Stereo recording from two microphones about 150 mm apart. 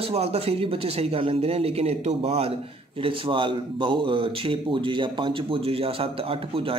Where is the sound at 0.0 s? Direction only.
45° right (ahead or behind).